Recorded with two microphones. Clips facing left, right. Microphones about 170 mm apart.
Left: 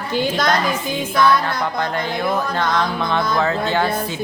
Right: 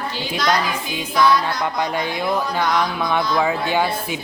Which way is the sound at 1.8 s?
15° right (ahead or behind).